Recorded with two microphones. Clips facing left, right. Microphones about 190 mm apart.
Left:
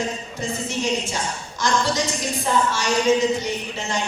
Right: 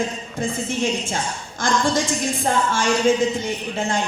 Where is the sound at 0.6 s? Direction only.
50° right (ahead or behind).